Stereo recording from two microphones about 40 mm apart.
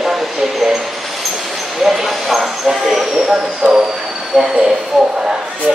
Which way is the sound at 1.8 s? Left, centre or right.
Centre.